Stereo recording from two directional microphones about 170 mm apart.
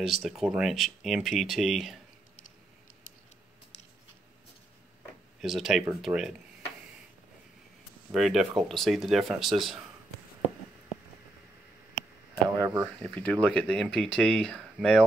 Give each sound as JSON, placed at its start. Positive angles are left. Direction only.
{"t": 0.0, "sound": "speech", "side_deg": 0}
{"t": 5.4, "sound": "speech", "side_deg": 0}
{"t": 8.1, "sound": "speech", "side_deg": 0}
{"t": 12.4, "sound": "speech", "side_deg": -20}
{"t": 13.0, "sound": "speech", "side_deg": 5}